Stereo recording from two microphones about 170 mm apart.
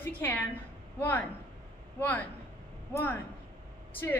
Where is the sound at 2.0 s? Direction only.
10° left (ahead or behind).